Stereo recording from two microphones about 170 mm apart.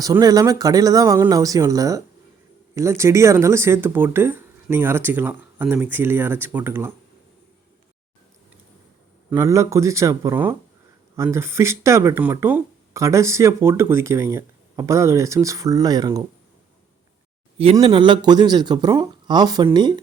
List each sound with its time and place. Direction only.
0.0 s speech: 20° right (ahead or behind)
9.3 s speech: 15° right (ahead or behind)
17.6 s speech: 35° right (ahead or behind)